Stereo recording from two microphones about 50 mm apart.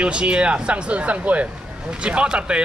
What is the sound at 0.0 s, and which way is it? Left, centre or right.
A man's voice, right.